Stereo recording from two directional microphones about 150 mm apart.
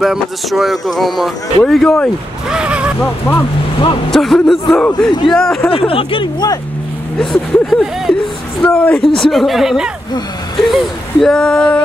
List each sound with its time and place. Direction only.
0.0 s speech: centre (ahead or behind)
2.5 s speech: 5° right (ahead or behind)
3.0 s speech: 10° left (ahead or behind)
5.7 s speech: 40° left (ahead or behind)
7.2 s speech: 5° left (ahead or behind)